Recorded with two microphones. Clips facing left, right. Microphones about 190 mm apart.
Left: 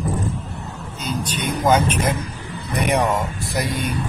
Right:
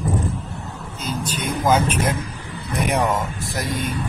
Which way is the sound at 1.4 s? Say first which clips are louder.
Left 1 dB; 5° right (ahead or behind).